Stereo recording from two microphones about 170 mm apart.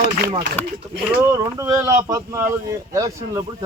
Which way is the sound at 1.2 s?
15° right (ahead or behind).